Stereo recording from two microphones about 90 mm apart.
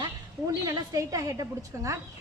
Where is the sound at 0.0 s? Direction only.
40° right (ahead or behind).